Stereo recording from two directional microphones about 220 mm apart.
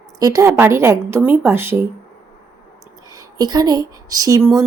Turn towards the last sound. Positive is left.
turn(degrees=-15)  # may be behind; listen again after turning